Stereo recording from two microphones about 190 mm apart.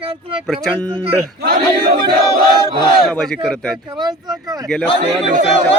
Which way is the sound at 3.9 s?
20° right (ahead or behind).